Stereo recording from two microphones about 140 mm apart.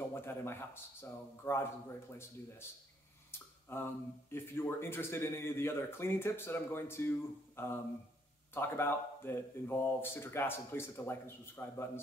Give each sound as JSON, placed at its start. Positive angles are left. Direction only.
{"t": 0.1, "sound": "speech", "side_deg": 15}
{"t": 3.3, "sound": "speech", "side_deg": 15}